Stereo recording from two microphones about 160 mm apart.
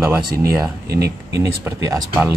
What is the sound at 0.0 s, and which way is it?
Speech, 10° right (ahead or behind).